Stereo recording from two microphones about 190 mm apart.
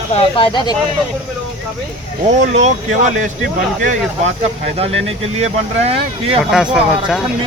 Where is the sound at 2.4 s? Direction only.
35° right (ahead or behind).